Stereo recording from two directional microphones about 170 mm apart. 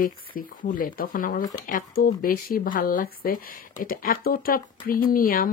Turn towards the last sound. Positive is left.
turn(degrees=55)  # may be behind; listen again after turning